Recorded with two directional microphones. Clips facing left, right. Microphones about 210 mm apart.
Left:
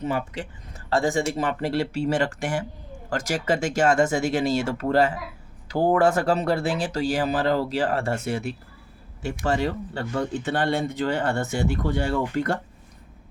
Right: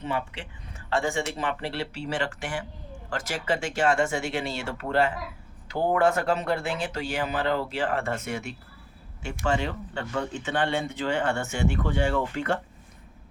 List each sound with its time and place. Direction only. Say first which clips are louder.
0.0 s speech: left 4 dB; 40° left (ahead or behind)